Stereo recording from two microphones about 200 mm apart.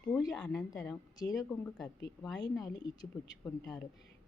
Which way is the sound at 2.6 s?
15° left (ahead or behind).